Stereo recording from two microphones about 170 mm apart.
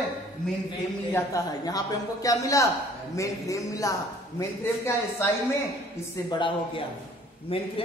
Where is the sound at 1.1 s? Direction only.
20° left (ahead or behind).